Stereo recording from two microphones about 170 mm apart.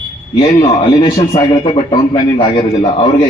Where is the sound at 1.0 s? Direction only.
30° left (ahead or behind).